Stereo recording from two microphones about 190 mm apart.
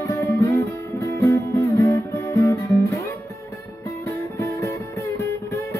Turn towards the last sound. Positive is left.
turn(degrees=15)  # may be behind; listen again after turning